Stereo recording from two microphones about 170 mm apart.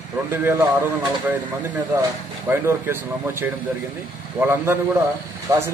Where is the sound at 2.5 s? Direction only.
15° right (ahead or behind).